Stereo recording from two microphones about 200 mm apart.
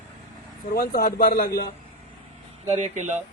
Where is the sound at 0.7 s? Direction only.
50° left (ahead or behind).